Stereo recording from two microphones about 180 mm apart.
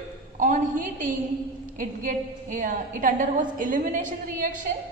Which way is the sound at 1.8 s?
45° right (ahead or behind).